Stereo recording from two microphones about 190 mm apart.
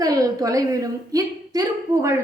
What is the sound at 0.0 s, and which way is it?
A woman's voice, 20° right (ahead or behind).